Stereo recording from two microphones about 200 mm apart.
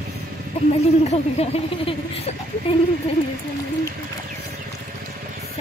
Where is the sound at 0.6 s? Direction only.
30° left (ahead or behind).